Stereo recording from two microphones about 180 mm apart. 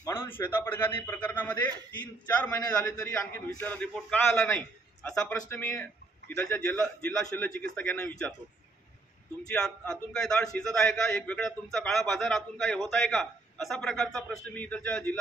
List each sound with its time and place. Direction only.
0.0 s a man's voice: 10° left (ahead or behind)
3.5 s a man's voice: 5° left (ahead or behind)
9.5 s a man's voice: 5° left (ahead or behind)